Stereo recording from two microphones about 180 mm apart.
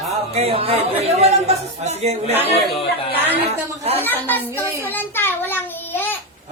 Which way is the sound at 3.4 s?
35° right (ahead or behind).